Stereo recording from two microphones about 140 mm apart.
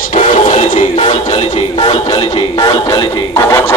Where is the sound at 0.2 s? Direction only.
65° left (ahead or behind).